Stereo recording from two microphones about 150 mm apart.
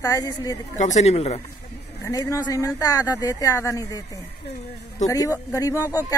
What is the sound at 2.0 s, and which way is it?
A man's voice, 20° left (ahead or behind).